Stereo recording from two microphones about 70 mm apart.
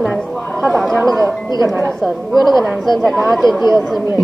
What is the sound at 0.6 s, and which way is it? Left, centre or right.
Speech, centre.